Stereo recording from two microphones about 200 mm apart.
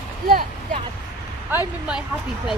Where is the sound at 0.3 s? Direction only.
45° right (ahead or behind).